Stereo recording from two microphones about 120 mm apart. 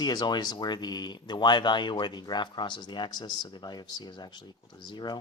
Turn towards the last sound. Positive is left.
turn(degrees=40)  # may be behind; listen again after turning